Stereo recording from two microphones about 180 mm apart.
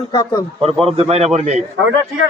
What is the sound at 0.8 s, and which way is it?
Speech, 35° right (ahead or behind).